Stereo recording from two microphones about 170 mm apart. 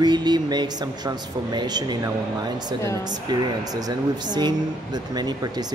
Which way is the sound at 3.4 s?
20° right (ahead or behind).